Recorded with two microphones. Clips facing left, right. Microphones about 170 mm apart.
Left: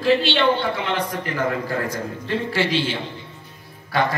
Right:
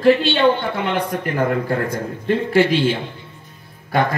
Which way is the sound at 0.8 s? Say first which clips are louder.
Right 3 dB; 55° right (ahead or behind).